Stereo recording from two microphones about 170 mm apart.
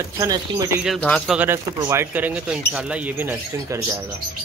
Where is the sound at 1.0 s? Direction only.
5° left (ahead or behind).